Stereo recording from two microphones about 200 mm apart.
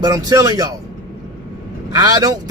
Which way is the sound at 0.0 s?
20° right (ahead or behind).